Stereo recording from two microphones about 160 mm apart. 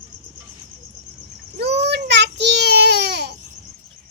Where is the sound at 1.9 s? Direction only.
90° right.